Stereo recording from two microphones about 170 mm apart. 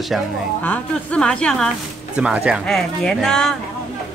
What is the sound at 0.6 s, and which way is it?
A woman's voice, 10° left (ahead or behind).